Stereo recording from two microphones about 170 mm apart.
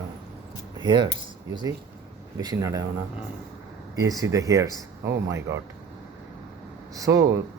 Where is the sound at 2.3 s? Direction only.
20° right (ahead or behind).